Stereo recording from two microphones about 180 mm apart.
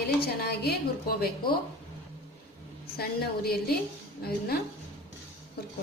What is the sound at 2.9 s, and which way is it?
A woman's voice, 60° left (ahead or behind).